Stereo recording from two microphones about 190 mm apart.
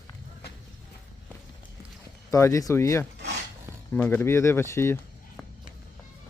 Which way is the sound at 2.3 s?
15° left (ahead or behind).